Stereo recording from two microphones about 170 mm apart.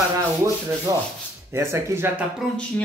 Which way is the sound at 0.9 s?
20° right (ahead or behind).